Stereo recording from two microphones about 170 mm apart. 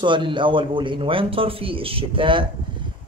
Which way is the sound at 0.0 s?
30° right (ahead or behind).